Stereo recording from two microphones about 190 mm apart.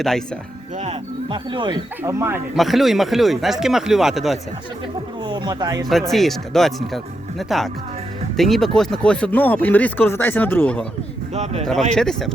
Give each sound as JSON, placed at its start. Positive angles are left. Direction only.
{"t": 1.3, "sound": "speech", "side_deg": -25}
{"t": 2.6, "sound": "speech", "side_deg": 0}
{"t": 5.2, "sound": "speech", "side_deg": -25}
{"t": 5.9, "sound": "speech", "side_deg": 0}
{"t": 11.9, "sound": "speech", "side_deg": 5}